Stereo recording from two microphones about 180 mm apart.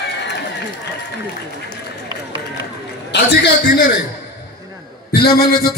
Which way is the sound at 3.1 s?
55° left (ahead or behind).